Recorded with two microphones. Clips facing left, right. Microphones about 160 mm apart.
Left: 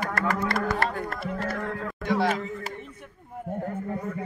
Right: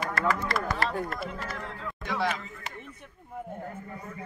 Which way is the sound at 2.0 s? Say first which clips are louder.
Left 5 dB; 40° left (ahead or behind).